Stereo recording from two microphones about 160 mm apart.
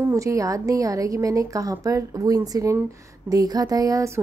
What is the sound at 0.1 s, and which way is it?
A woman's voice, 20° right (ahead or behind).